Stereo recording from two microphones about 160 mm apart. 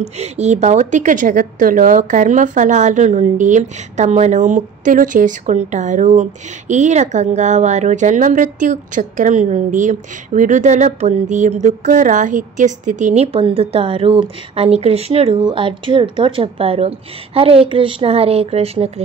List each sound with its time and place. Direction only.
0.0 s a woman's voice: 45° right (ahead or behind)